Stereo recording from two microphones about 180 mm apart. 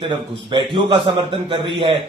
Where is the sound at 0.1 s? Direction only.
25° right (ahead or behind).